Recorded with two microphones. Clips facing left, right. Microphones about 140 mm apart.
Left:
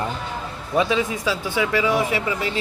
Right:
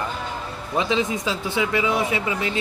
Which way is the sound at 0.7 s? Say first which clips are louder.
Left 2 dB; 25° right (ahead or behind).